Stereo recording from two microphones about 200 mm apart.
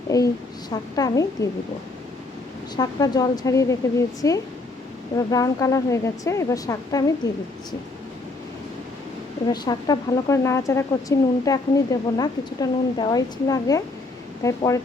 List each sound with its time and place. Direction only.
0.1 s speech: 15° left (ahead or behind)
2.7 s speech: 20° left (ahead or behind)
9.5 s a woman's voice: 20° left (ahead or behind)